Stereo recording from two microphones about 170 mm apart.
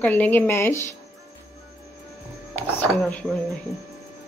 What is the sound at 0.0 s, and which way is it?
Speech, 10° left (ahead or behind).